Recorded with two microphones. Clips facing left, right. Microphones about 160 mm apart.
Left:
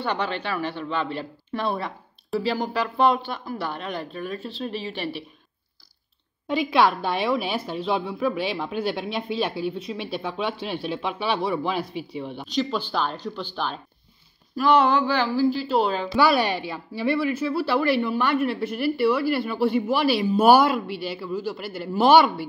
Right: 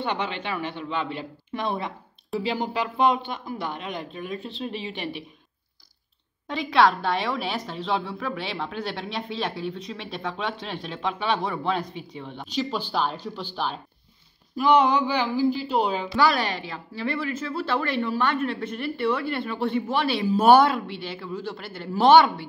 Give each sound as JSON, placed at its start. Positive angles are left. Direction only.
{"t": 0.0, "sound": "speech", "side_deg": -20}
{"t": 6.4, "sound": "a woman's voice", "side_deg": 10}
{"t": 12.5, "sound": "a woman's voice", "side_deg": -10}
{"t": 16.2, "sound": "a woman's voice", "side_deg": 10}